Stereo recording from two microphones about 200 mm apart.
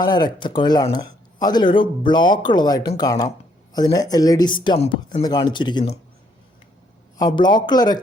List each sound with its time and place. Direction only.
0.0 s speech: 20° left (ahead or behind)
7.2 s speech: 20° left (ahead or behind)